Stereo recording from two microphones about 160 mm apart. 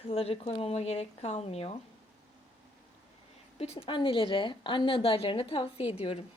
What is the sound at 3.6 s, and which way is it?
A woman's voice, 35° left (ahead or behind).